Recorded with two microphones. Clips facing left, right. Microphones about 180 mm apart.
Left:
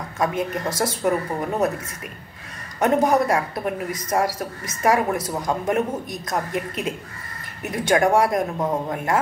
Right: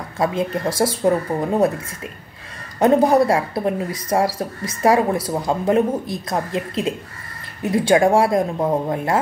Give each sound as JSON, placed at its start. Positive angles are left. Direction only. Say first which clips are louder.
{"t": 0.2, "sound": "speech", "louder": "right 3 dB", "side_deg": -30}
{"t": 2.8, "sound": "speech", "louder": "right 4 dB", "side_deg": -30}